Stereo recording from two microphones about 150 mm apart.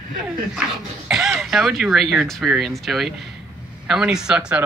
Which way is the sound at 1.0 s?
5° right (ahead or behind).